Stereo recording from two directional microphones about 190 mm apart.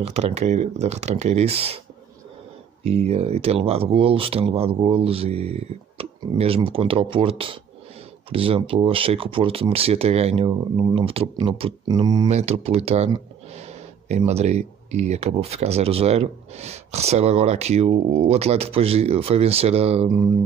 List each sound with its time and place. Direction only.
0.0 s speech: 35° right (ahead or behind)
2.8 s speech: 35° right (ahead or behind)
12.3 s speech: 35° right (ahead or behind)